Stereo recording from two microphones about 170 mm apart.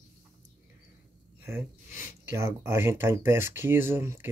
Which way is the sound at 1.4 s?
15° right (ahead or behind).